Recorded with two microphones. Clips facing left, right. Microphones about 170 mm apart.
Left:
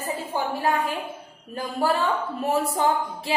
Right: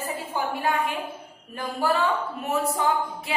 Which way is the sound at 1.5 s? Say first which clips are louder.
Left 1 dB; 35° left (ahead or behind).